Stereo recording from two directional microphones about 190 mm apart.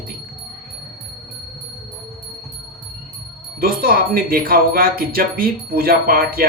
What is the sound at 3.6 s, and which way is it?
Speech, 50° right (ahead or behind).